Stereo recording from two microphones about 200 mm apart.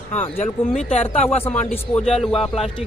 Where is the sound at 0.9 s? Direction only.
35° left (ahead or behind).